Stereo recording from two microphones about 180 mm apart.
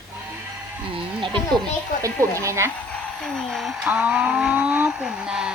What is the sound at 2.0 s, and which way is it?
Speech, 15° right (ahead or behind).